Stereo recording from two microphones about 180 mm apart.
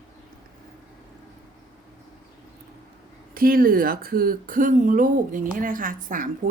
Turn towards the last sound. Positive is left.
turn(degrees=-50)  # may be behind; listen again after turning